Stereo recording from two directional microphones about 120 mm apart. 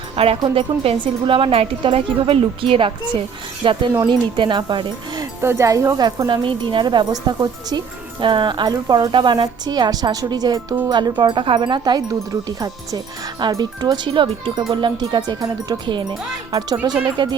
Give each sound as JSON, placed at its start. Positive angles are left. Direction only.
{"t": 0.3, "sound": "speech", "side_deg": -45}
{"t": 5.4, "sound": "speech", "side_deg": -20}